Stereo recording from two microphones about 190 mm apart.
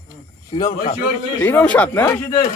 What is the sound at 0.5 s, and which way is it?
Stir, 20° left (ahead or behind).